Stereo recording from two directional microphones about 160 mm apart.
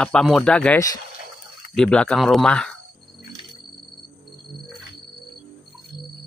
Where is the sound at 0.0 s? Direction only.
5° left (ahead or behind).